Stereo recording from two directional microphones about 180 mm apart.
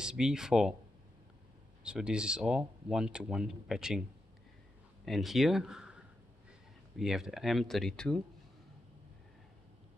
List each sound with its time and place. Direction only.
0.0 s speech: 5° right (ahead or behind)
1.8 s speech: 5° right (ahead or behind)
5.0 s speech: centre (ahead or behind)
7.0 s speech: centre (ahead or behind)